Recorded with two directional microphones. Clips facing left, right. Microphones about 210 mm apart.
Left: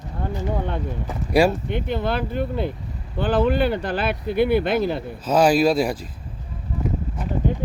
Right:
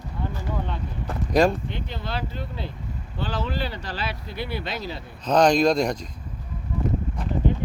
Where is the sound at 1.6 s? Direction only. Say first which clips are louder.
Left 9 dB; 55° left (ahead or behind).